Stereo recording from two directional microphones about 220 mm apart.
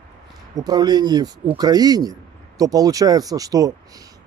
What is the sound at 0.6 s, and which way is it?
A man's voice, 20° right (ahead or behind).